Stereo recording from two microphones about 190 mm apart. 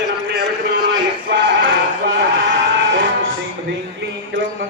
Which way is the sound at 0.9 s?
75° right (ahead or behind).